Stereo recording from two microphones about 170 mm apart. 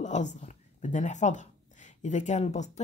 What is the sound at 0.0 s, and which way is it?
A woman's voice, 45° left (ahead or behind).